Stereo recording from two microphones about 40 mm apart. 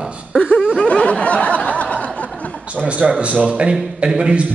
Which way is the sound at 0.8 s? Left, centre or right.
Left.